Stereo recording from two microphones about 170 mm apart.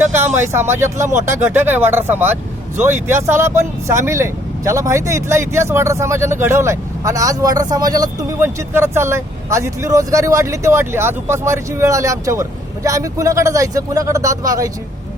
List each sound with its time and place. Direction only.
0.4 s speech: 15° right (ahead or behind)